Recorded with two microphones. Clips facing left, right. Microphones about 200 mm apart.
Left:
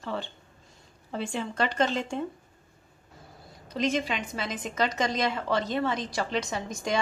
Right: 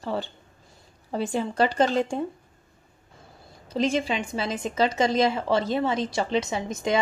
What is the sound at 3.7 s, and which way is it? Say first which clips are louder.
A woman's voice: right 3 dB; 30° right (ahead or behind).